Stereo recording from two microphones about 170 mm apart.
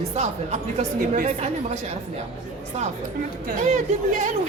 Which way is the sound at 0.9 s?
55° right (ahead or behind).